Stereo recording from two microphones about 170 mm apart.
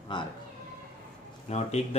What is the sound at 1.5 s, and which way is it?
Speech, 40° left (ahead or behind).